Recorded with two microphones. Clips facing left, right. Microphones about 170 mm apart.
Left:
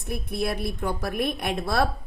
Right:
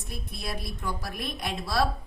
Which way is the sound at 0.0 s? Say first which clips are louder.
Left 10 dB; 60° left (ahead or behind).